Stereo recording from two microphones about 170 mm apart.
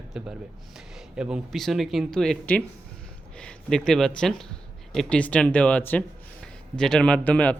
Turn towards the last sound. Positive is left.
turn(degrees=10)  # may be behind; listen again after turning